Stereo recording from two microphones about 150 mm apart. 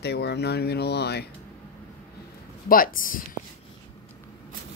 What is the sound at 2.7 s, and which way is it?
Speech, 70° left (ahead or behind).